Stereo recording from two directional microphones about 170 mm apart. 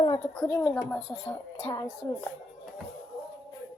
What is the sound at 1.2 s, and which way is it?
Speech, 30° left (ahead or behind).